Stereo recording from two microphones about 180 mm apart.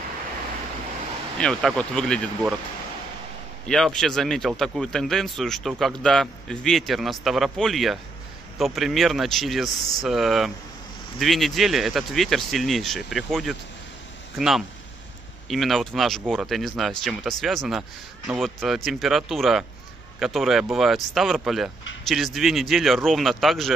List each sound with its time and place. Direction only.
1.4 s speech: 5° left (ahead or behind)
3.6 s speech: centre (ahead or behind)